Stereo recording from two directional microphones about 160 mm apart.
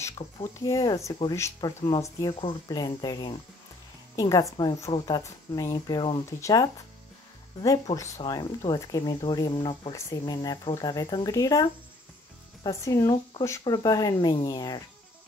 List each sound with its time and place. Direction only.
0.0 s a woman's voice: 20° left (ahead or behind)